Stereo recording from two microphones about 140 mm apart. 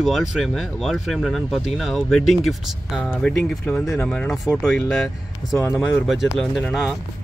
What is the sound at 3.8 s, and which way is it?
Speech, 20° left (ahead or behind).